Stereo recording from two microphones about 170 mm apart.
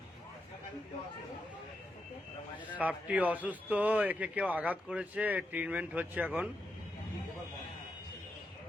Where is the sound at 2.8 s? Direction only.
10° right (ahead or behind).